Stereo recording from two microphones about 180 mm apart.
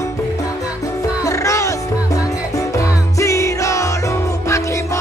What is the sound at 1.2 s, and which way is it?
Music, 15° left (ahead or behind).